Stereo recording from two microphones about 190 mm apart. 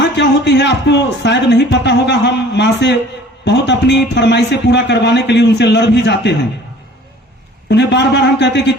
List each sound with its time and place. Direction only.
0.0 s a man's voice: 65° left (ahead or behind)
7.7 s a man's voice: 65° left (ahead or behind)